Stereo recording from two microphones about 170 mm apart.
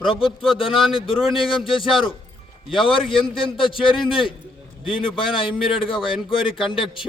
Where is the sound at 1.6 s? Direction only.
30° left (ahead or behind).